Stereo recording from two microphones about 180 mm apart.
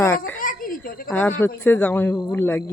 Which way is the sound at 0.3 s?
50° left (ahead or behind).